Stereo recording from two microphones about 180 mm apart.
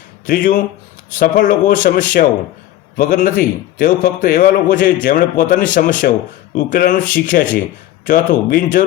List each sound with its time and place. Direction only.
0.3 s a man's voice: 50° left (ahead or behind)